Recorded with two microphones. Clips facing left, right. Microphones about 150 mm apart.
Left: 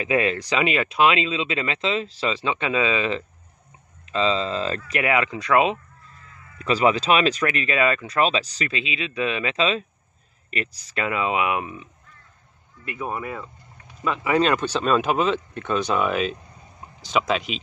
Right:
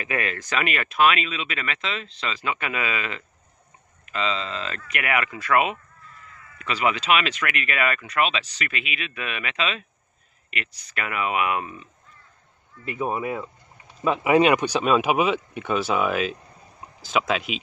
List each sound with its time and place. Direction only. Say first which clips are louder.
0.0 s speech: left 6 dB; 20° left (ahead or behind)
6.6 s speech: left 5 dB; 35° left (ahead or behind)
11.0 s speech: left 2 dB; 25° left (ahead or behind)
12.8 s speech: right 3 dB; 20° right (ahead or behind); by 17.6 s centre (ahead or behind)